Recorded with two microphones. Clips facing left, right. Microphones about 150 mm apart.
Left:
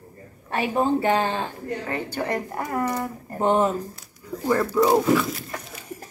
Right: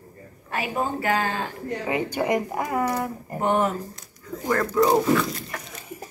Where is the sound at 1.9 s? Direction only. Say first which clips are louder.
Right 5 dB; 10° right (ahead or behind).